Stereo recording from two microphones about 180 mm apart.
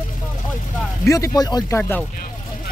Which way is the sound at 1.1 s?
20° left (ahead or behind).